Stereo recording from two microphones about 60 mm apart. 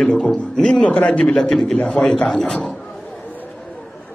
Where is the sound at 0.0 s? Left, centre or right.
Centre.